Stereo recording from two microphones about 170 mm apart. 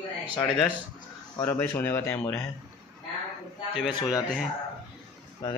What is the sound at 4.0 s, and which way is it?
Speech, 20° left (ahead or behind).